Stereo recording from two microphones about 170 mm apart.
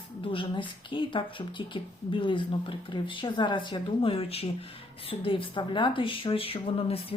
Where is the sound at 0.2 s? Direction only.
30° left (ahead or behind).